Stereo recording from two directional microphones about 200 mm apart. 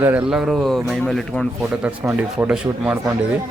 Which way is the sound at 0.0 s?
5° right (ahead or behind).